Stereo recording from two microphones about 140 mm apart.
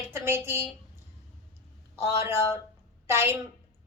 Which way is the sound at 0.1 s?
15° right (ahead or behind).